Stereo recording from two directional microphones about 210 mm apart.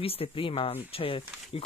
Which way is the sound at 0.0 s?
25° left (ahead or behind).